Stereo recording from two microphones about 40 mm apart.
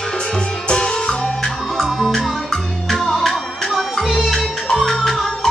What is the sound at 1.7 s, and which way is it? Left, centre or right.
Music, centre.